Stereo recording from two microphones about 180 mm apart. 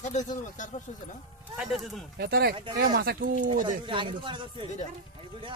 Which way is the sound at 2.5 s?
30° right (ahead or behind).